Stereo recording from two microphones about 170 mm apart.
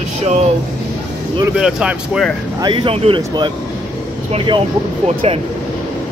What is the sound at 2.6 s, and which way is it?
Speech, 30° right (ahead or behind).